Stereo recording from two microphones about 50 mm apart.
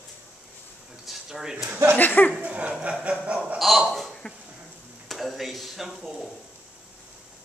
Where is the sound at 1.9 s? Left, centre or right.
Left.